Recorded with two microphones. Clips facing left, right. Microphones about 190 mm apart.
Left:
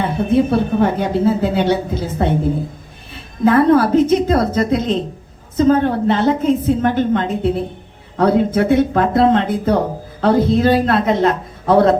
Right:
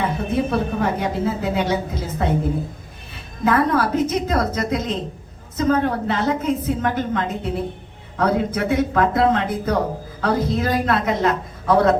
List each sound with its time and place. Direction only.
0.5 s a woman's voice: 30° left (ahead or behind)
3.4 s a woman's voice: 30° left (ahead or behind)